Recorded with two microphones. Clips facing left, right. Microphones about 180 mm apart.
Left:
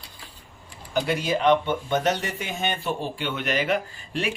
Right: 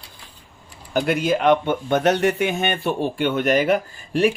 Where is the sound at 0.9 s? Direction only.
55° right (ahead or behind).